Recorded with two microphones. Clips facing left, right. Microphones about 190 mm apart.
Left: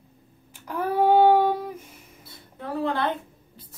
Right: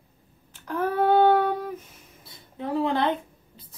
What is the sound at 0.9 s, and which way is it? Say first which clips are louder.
Child singing: left 2 dB; 15° left (ahead or behind).